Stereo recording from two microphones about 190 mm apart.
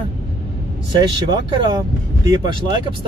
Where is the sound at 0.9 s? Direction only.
25° right (ahead or behind).